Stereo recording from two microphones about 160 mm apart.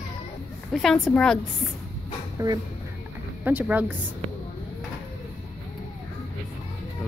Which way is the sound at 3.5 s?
10° right (ahead or behind).